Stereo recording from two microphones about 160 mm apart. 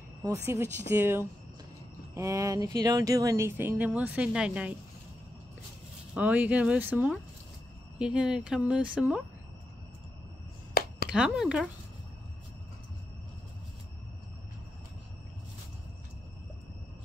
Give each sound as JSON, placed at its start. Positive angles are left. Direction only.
{"t": 0.5, "sound": "speech", "side_deg": -15}
{"t": 6.1, "sound": "speech", "side_deg": -10}
{"t": 11.1, "sound": "speech", "side_deg": -5}